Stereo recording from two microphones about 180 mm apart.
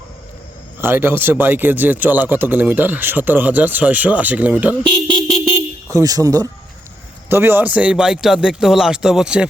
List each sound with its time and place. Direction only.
0.8 s speech: 10° right (ahead or behind)
5.3 s vehicle horn: 15° right (ahead or behind)
7.3 s a man's voice: 15° right (ahead or behind)